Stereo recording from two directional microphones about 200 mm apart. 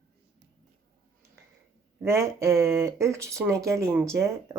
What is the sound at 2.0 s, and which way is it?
Speech, 15° right (ahead or behind).